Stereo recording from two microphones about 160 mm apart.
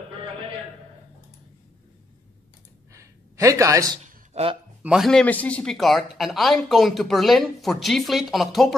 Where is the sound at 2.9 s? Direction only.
20° right (ahead or behind).